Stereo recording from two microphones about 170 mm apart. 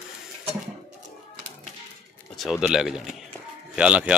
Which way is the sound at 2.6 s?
5° right (ahead or behind).